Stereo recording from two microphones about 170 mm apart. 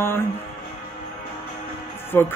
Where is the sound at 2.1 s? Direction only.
15° left (ahead or behind).